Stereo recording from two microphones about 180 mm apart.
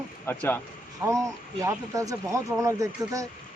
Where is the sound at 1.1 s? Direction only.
15° right (ahead or behind).